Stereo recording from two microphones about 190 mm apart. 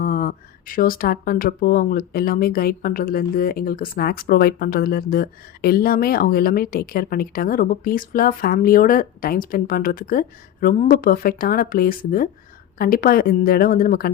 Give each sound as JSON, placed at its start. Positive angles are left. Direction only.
{"t": 0.0, "sound": "speech", "side_deg": 50}